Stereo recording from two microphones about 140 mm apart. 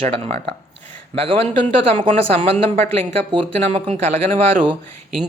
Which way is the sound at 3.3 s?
45° right (ahead or behind).